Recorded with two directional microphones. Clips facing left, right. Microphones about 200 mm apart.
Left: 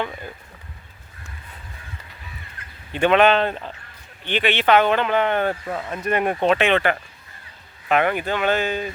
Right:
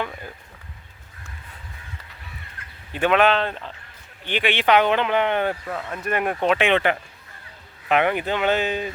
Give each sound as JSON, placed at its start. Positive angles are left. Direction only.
{"t": 2.9, "sound": "speech", "side_deg": -5}
{"t": 4.2, "sound": "speech", "side_deg": -10}
{"t": 5.6, "sound": "speech", "side_deg": 15}
{"t": 6.5, "sound": "speech", "side_deg": -15}